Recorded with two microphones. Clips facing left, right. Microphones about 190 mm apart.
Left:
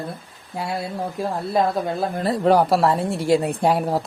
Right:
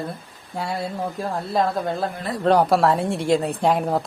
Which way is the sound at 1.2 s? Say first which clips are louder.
Left 2 dB; 5° left (ahead or behind).